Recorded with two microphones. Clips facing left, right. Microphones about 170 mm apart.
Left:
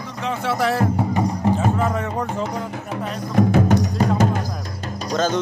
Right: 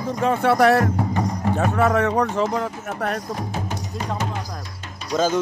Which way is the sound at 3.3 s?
60° left (ahead or behind).